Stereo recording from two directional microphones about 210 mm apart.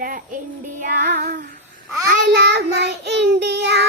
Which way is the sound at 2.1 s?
50° right (ahead or behind).